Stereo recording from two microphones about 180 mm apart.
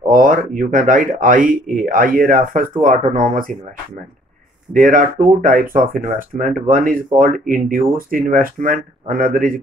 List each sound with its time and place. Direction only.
0.1 s speech: 50° right (ahead or behind)
4.7 s speech: 50° right (ahead or behind)